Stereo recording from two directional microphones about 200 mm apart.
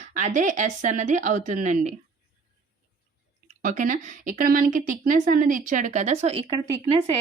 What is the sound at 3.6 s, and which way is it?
Speech, 40° right (ahead or behind).